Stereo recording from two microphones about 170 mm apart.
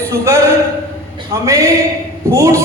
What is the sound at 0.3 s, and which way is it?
A man's voice, 15° right (ahead or behind).